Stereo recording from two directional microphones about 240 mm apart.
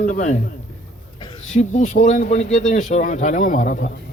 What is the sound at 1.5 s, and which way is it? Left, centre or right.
Speech, left.